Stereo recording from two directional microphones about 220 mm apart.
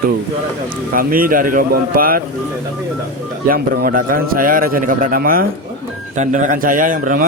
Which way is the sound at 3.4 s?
40° right (ahead or behind).